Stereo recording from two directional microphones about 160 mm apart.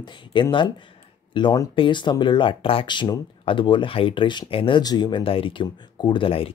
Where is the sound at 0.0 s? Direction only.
30° left (ahead or behind).